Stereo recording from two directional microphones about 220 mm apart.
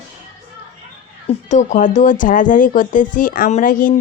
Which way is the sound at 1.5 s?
35° left (ahead or behind).